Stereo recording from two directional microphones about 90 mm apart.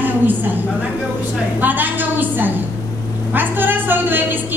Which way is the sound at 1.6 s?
20° right (ahead or behind).